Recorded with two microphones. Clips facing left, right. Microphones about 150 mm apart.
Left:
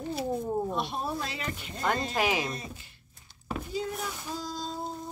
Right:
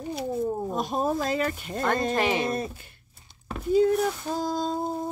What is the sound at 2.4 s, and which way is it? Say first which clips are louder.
Speech: right 8 dB; 55° right (ahead or behind).